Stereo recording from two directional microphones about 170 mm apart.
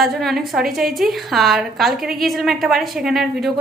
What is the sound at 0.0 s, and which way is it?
A woman's voice, centre (ahead or behind).